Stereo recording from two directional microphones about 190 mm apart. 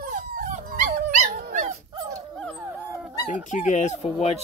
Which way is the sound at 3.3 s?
40° left (ahead or behind).